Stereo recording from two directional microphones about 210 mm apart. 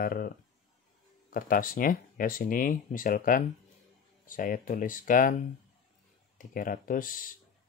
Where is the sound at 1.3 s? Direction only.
40° left (ahead or behind).